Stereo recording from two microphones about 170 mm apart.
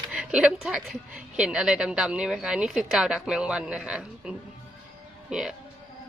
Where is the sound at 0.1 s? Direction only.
5° right (ahead or behind).